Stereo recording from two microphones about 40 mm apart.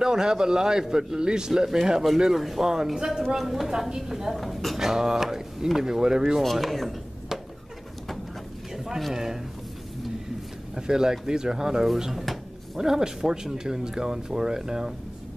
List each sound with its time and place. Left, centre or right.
0.0 s speech: centre
2.3 s speech: centre
6.4 s speech: centre
8.7 s speech: centre
10.7 s speech: centre